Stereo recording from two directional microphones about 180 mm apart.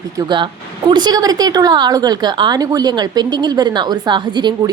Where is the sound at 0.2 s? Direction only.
25° right (ahead or behind).